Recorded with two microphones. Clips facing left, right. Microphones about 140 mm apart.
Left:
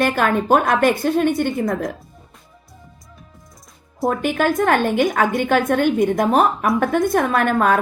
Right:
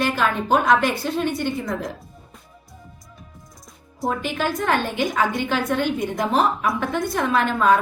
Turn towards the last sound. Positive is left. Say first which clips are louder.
# left 1 dB
turn(degrees=50)  # may be behind; listen again after turning